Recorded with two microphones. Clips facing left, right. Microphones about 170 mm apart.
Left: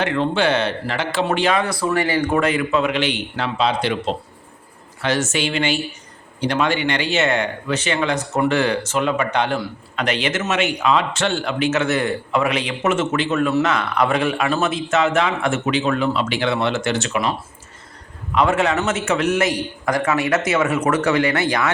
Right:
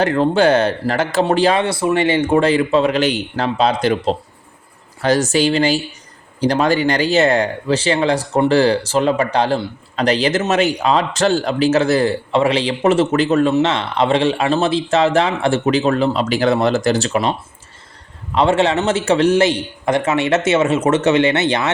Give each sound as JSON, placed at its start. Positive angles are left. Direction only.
{"t": 0.0, "sound": "speech", "side_deg": -40}
{"t": 13.5, "sound": "speech", "side_deg": -25}
{"t": 18.3, "sound": "a man's voice", "side_deg": -30}